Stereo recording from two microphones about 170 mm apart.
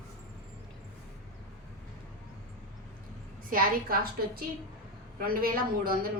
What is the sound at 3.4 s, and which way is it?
A woman's voice, 55° right (ahead or behind).